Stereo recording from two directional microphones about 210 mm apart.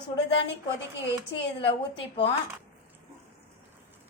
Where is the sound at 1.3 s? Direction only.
25° left (ahead or behind).